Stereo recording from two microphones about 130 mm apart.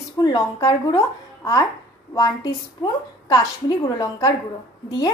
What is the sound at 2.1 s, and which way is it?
A woman's voice, 30° left (ahead or behind).